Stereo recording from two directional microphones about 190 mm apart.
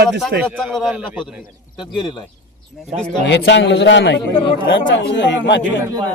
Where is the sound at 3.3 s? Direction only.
65° left (ahead or behind).